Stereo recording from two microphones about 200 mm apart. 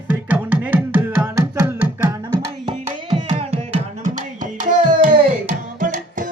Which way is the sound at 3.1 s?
30° right (ahead or behind).